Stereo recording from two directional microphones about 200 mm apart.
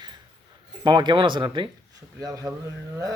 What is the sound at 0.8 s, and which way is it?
A man's voice, 20° right (ahead or behind).